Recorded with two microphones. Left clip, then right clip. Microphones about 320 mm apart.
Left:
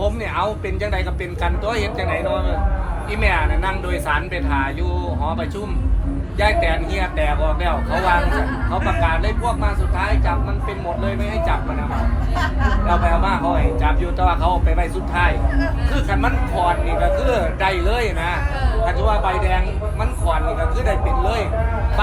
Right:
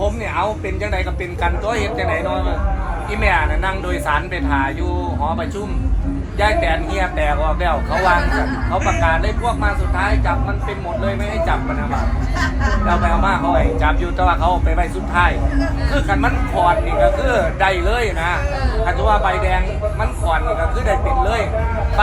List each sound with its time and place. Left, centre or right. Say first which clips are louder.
0.0 s a man's voice: right 2 dB; centre
12.9 s a man's voice: right 2 dB; centre